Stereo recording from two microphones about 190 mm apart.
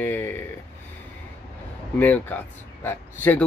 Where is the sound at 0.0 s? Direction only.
10° left (ahead or behind).